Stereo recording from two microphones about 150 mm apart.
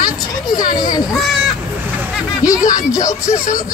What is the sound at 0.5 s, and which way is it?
Speech, 25° left (ahead or behind).